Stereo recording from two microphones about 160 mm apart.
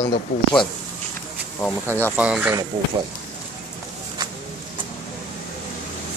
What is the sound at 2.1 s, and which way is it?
Speech, 10° right (ahead or behind).